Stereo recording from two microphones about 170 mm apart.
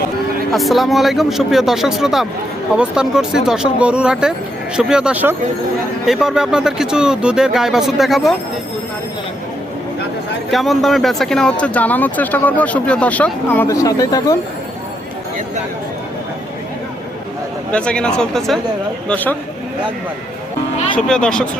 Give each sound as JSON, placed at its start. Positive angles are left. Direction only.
{"t": 0.5, "sound": "speech", "side_deg": 0}
{"t": 10.5, "sound": "speech", "side_deg": 0}
{"t": 13.7, "sound": "speech", "side_deg": 20}
{"t": 17.7, "sound": "speech", "side_deg": 5}
{"t": 20.9, "sound": "speech", "side_deg": 5}